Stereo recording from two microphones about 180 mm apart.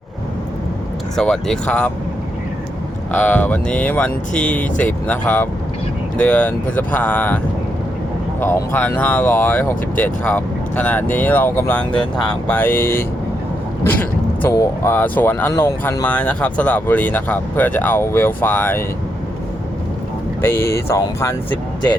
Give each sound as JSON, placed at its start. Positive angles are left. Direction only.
{"t": 1.1, "sound": "speech", "side_deg": 5}
{"t": 3.1, "sound": "speech", "side_deg": 10}
{"t": 8.4, "sound": "speech", "side_deg": 10}
{"t": 20.4, "sound": "speech", "side_deg": 15}